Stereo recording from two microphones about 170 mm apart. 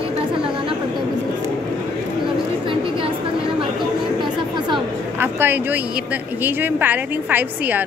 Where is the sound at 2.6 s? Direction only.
30° right (ahead or behind).